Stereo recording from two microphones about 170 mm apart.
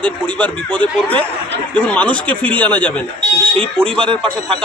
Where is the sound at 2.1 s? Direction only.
10° left (ahead or behind).